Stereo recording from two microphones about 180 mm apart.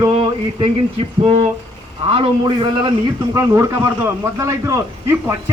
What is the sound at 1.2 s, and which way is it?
A man's voice, 35° right (ahead or behind).